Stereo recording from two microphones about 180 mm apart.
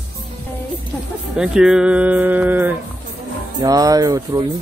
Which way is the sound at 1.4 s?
5° right (ahead or behind).